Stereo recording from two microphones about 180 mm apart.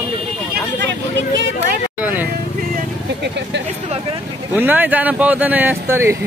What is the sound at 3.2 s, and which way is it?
Vehicle, 75° right (ahead or behind).